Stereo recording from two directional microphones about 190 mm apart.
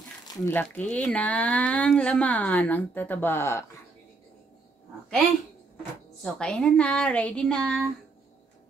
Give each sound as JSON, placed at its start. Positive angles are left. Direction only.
{"t": 0.2, "sound": "a sound", "side_deg": 20}
{"t": 0.6, "sound": "speech", "side_deg": 5}
{"t": 6.2, "sound": "speech", "side_deg": 5}